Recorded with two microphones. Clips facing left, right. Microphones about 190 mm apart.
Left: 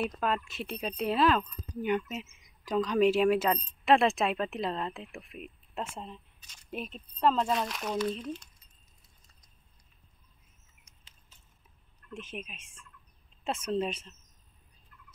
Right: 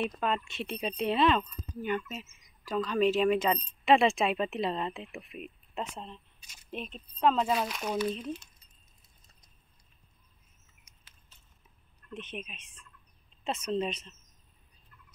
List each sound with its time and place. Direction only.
0.0 s speech: 5° left (ahead or behind)
1.8 s speech: 15° left (ahead or behind); by 8.5 s 5° right (ahead or behind)
12.2 s speech: 5° left (ahead or behind)
12.5 s speech: 50° left (ahead or behind)
13.7 s speech: 5° left (ahead or behind)